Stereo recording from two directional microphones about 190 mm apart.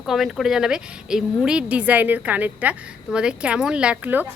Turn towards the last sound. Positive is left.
turn(degrees=-10)  # may be behind; listen again after turning